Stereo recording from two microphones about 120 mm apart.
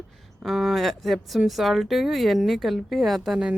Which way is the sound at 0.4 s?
Centre (ahead or behind).